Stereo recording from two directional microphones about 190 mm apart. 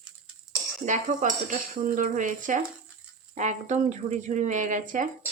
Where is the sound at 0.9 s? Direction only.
40° right (ahead or behind).